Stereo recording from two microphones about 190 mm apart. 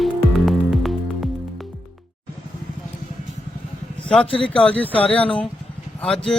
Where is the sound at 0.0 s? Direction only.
Centre (ahead or behind).